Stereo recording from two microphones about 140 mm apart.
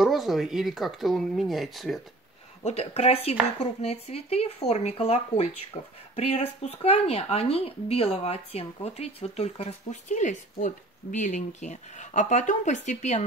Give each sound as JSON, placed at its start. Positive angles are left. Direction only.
{"t": 0.0, "sound": "speech", "side_deg": 0}
{"t": 2.6, "sound": "speech", "side_deg": 50}